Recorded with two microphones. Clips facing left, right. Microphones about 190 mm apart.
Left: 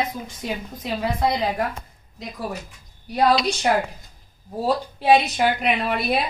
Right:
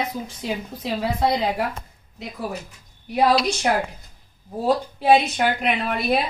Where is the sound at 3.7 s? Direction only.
5° left (ahead or behind).